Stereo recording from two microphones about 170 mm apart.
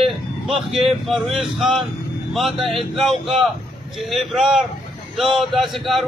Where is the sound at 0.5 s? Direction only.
Centre (ahead or behind).